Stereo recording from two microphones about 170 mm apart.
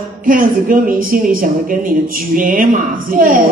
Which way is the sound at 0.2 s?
55° right (ahead or behind).